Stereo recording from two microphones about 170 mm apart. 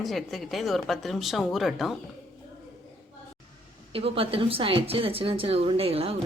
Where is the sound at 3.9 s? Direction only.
35° right (ahead or behind).